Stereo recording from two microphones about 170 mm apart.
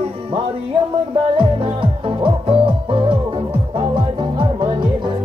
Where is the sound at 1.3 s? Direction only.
30° right (ahead or behind).